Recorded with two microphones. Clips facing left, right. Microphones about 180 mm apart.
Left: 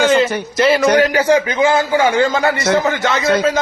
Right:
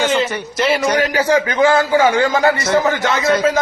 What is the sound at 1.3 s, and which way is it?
A man's voice, 20° left (ahead or behind).